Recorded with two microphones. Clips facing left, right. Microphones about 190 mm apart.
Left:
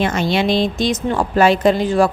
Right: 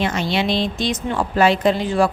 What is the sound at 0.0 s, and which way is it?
A woman's voice, 50° left (ahead or behind).